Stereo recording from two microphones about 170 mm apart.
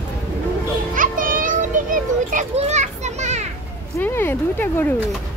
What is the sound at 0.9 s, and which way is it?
Music, 55° right (ahead or behind).